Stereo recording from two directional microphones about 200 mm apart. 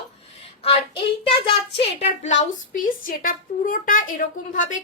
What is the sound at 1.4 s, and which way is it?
Speech, 30° left (ahead or behind).